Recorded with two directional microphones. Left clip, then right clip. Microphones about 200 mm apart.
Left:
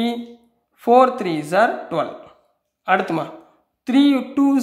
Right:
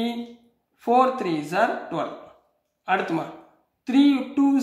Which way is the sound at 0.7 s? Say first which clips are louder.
Left 6 dB; 40° left (ahead or behind).